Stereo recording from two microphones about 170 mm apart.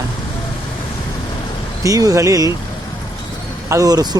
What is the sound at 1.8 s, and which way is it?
Speech, 20° right (ahead or behind).